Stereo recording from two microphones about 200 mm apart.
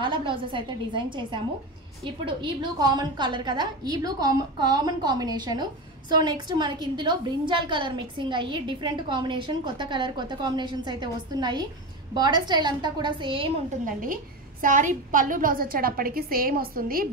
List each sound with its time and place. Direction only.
0.0 s a woman's voice: 25° right (ahead or behind)
13.8 s a woman's voice: 45° right (ahead or behind)